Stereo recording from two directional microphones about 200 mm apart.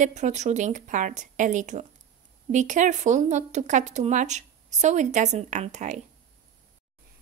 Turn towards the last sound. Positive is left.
turn(degrees=-35)  # may be behind; listen again after turning